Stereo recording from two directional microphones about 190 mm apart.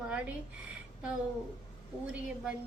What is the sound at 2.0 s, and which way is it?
Speech, 5° right (ahead or behind).